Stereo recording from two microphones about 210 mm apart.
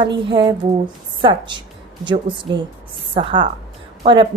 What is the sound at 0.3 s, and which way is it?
A woman's voice, 25° right (ahead or behind).